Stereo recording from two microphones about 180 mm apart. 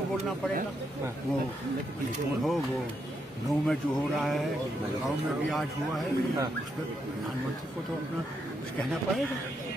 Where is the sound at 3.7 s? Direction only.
Centre (ahead or behind).